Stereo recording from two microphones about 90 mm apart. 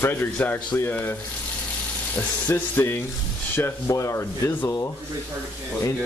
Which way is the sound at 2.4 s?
20° left (ahead or behind).